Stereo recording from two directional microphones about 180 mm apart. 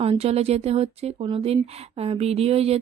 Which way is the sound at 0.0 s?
35° right (ahead or behind).